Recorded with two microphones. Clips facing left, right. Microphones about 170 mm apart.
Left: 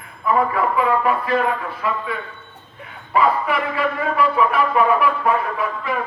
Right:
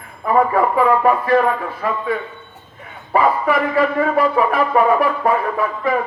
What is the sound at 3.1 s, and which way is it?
A man's voice, 40° right (ahead or behind).